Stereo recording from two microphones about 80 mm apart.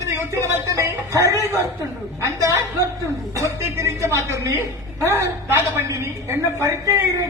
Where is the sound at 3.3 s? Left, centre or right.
Right.